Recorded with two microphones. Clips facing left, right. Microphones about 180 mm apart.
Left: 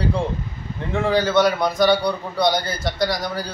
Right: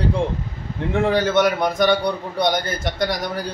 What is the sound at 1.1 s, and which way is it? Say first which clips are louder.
A man's voice: left 3 dB; 20° right (ahead or behind).